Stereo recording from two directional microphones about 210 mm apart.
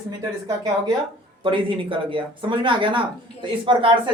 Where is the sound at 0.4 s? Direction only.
15° right (ahead or behind).